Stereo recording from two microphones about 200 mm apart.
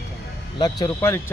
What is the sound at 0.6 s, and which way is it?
Speech, 20° left (ahead or behind).